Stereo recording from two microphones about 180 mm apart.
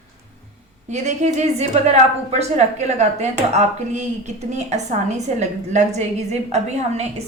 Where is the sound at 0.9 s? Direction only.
40° right (ahead or behind).